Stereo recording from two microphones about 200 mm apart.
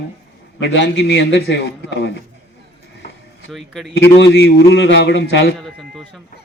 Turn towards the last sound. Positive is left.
turn(degrees=60)  # may be behind; listen again after turning